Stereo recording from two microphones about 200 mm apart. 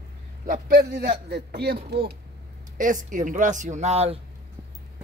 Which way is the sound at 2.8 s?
40° right (ahead or behind).